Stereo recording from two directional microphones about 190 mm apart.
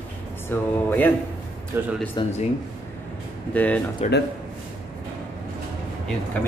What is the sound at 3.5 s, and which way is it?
Speech, 10° left (ahead or behind).